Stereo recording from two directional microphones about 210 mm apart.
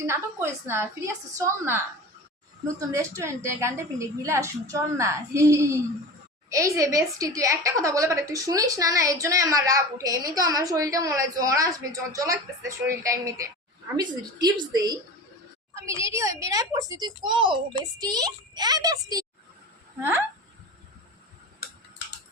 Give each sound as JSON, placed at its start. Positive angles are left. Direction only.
{"t": 0.0, "sound": "a woman's voice", "side_deg": -10}
{"t": 2.9, "sound": "a woman's voice", "side_deg": -15}